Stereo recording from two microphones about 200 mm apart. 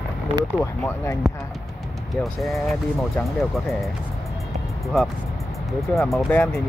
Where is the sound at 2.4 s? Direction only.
Centre (ahead or behind).